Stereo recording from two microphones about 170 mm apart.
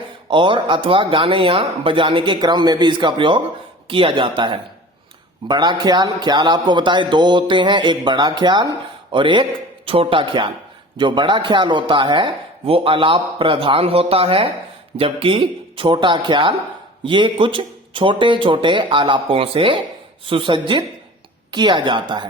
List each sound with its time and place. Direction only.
0.3 s a man's voice: 30° right (ahead or behind)